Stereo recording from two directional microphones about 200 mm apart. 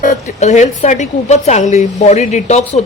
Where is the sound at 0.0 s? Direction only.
35° left (ahead or behind).